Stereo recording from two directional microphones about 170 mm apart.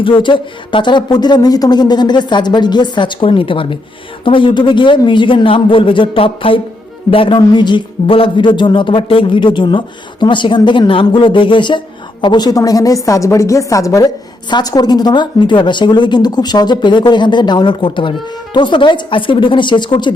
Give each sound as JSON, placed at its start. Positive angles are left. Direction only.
{"t": 0.0, "sound": "a man's voice", "side_deg": 30}